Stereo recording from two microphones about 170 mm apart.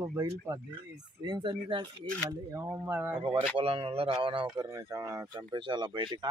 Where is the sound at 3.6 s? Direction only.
35° right (ahead or behind).